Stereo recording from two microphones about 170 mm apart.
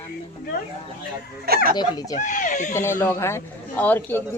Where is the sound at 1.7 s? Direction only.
25° left (ahead or behind).